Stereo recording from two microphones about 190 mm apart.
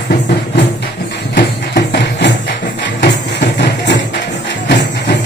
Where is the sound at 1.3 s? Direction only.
65° left (ahead or behind).